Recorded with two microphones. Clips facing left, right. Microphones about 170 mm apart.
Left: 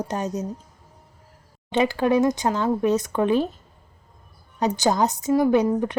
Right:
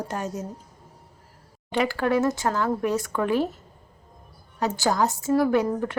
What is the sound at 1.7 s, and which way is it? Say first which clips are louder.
A woman's voice: left 3 dB; 20° left (ahead or behind).